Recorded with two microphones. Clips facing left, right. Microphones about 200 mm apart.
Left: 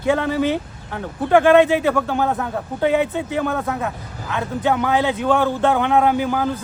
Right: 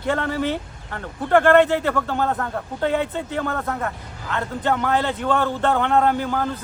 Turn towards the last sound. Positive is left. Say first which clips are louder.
# left 3 dB
turn(degrees=15)  # may be behind; listen again after turning